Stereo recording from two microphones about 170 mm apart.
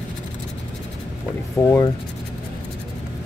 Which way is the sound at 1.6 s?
15° left (ahead or behind).